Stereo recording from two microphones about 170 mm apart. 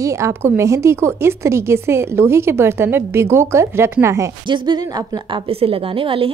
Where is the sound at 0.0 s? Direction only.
15° right (ahead or behind).